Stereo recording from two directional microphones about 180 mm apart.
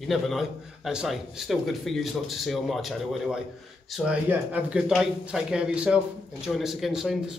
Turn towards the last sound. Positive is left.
turn(degrees=0)  # may be behind; listen again after turning